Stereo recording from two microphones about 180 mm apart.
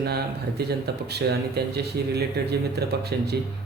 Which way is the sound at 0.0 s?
65° right (ahead or behind).